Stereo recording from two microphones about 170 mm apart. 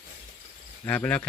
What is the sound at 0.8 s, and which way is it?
Speech, 10° left (ahead or behind).